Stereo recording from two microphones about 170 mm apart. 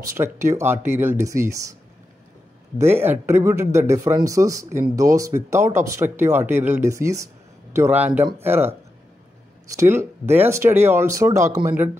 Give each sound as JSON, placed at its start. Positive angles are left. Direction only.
{"t": 0.0, "sound": "speech", "side_deg": -15}
{"t": 2.8, "sound": "speech", "side_deg": -15}